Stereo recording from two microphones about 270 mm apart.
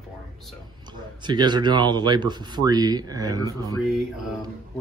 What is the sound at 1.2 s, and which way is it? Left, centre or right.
Speech, centre.